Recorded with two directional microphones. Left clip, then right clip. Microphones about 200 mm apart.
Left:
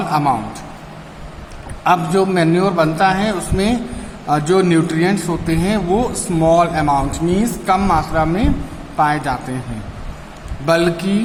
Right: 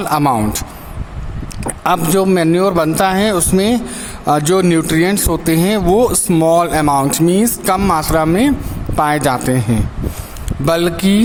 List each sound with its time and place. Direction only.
0.0 s speech: 50° right (ahead or behind)
1.8 s speech: 50° right (ahead or behind)
10.7 s speech: 50° right (ahead or behind)